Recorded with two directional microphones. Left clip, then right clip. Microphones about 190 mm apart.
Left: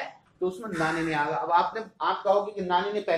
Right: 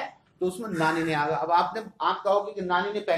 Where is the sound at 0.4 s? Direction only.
30° right (ahead or behind).